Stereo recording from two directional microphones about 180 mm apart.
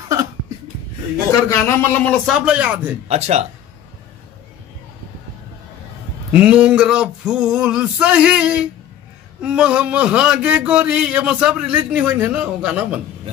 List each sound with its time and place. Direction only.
1.5 s speech: 15° left (ahead or behind)
2.4 s speech: 5° right (ahead or behind)
3.1 s speech: 35° right (ahead or behind)
6.4 s speech: 5° right (ahead or behind)